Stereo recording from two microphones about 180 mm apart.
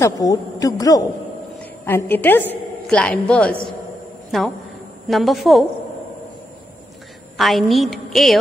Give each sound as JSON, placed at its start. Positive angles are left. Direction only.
{"t": 0.0, "sound": "a woman's voice", "side_deg": 20}
{"t": 5.0, "sound": "a woman's voice", "side_deg": 0}
{"t": 7.3, "sound": "a woman's voice", "side_deg": 0}